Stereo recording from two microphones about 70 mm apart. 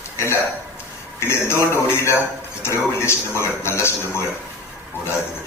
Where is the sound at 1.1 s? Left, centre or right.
Left.